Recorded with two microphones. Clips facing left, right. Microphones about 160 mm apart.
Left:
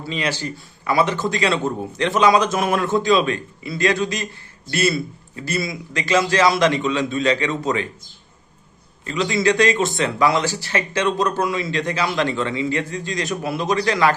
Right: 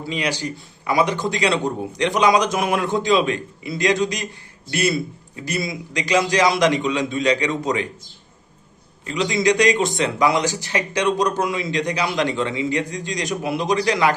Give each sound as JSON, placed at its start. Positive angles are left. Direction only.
{"t": 0.0, "sound": "a man's voice", "side_deg": -15}
{"t": 9.0, "sound": "a man's voice", "side_deg": -20}